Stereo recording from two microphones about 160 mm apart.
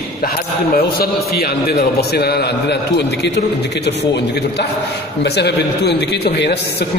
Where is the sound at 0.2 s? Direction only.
70° left (ahead or behind).